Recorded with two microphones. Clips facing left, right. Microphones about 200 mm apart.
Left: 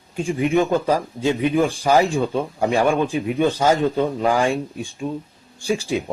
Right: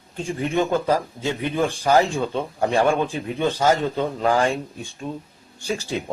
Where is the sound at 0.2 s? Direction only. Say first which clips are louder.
Left 4 dB; 15° left (ahead or behind).